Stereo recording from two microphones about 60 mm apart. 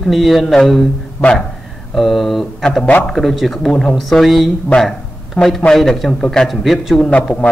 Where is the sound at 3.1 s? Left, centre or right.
Centre.